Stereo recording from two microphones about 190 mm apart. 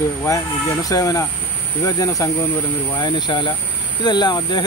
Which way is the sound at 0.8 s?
20° left (ahead or behind).